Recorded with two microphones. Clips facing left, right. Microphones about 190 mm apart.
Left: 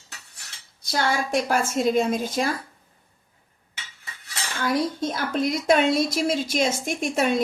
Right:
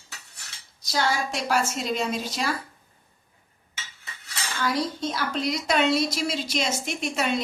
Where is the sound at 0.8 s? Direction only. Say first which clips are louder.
Left 1 dB; 55° left (ahead or behind).